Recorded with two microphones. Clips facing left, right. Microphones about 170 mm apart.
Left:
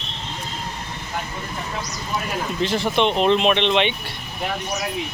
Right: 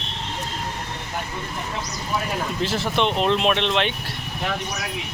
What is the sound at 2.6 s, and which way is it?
Speech, centre (ahead or behind).